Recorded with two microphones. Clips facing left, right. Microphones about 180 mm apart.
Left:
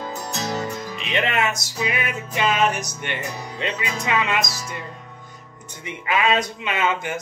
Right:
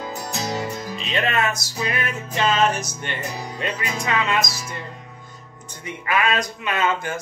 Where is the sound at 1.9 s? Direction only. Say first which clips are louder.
Even; 15° left (ahead or behind).